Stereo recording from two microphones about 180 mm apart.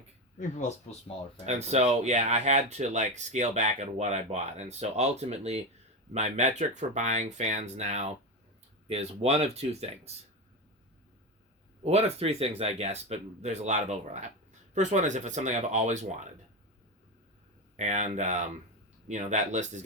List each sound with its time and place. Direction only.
0.3 s speech: 45° left (ahead or behind)
1.5 s speech: 35° right (ahead or behind)
11.8 s speech: 35° right (ahead or behind)
17.7 s speech: 40° right (ahead or behind)